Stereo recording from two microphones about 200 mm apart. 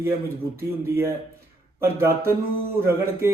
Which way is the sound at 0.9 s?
15° right (ahead or behind).